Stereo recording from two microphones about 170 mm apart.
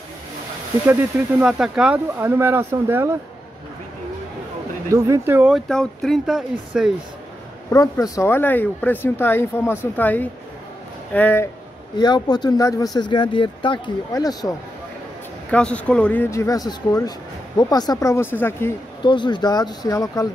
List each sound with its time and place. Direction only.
1.4 s speech: 5° right (ahead or behind)
2.1 s speech: 15° right (ahead or behind)
4.9 s speech: 20° right (ahead or behind)
5.5 s speech: 5° left (ahead or behind)
7.7 s speech: 20° left (ahead or behind)
12.0 s speech: 25° left (ahead or behind)
15.5 s speech: 5° left (ahead or behind)
19.0 s speech: 25° left (ahead or behind)